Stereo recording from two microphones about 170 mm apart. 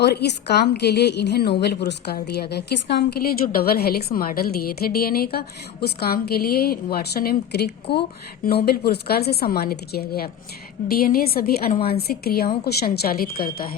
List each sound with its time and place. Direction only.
0.0 s a woman's voice: 75° left (ahead or behind); by 13.7 s 60° left (ahead or behind)